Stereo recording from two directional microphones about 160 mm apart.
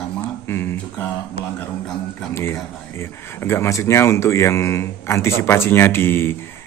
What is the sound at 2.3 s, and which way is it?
Speech, 15° left (ahead or behind).